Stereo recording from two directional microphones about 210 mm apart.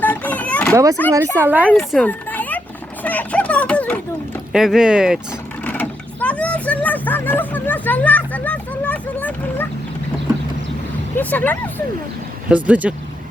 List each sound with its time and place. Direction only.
0.0 s a sound: 10° left (ahead or behind)
0.7 s speech: 15° right (ahead or behind); by 2.6 s 10° left (ahead or behind)
3.0 s a sound: 10° left (ahead or behind)
4.5 s speech: centre (ahead or behind)
5.6 s speech: 5° left (ahead or behind)
11.2 s speech: 10° left (ahead or behind)
12.5 s speech: 5° right (ahead or behind)